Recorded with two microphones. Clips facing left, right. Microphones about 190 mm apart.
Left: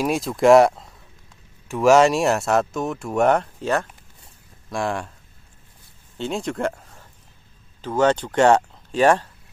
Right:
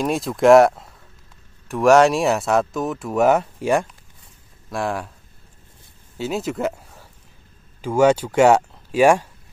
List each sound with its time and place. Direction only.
0.0 s speech: centre (ahead or behind)
6.1 s a sound: 5° right (ahead or behind)
7.8 s speech: 10° right (ahead or behind)